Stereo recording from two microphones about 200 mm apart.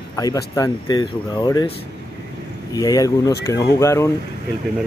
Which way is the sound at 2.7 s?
20° left (ahead or behind).